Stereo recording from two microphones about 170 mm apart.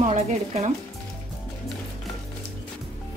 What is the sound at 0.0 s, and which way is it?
Speech, 40° right (ahead or behind).